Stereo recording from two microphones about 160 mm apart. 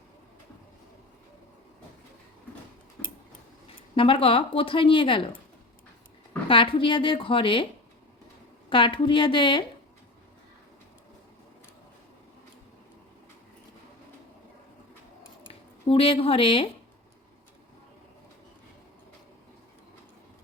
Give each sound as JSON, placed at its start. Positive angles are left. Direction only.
{"t": 3.9, "sound": "a woman's voice", "side_deg": 35}
{"t": 6.5, "sound": "a woman's voice", "side_deg": 30}
{"t": 8.7, "sound": "a woman's voice", "side_deg": 30}
{"t": 15.9, "sound": "a woman's voice", "side_deg": 35}